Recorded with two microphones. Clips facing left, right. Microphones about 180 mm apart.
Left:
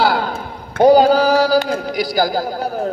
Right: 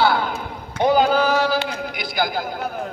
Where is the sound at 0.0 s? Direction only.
35° left (ahead or behind).